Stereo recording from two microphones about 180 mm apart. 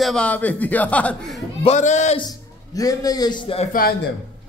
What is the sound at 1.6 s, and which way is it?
Speech, 40° left (ahead or behind).